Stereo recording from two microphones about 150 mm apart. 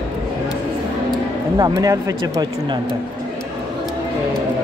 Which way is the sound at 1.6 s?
25° right (ahead or behind).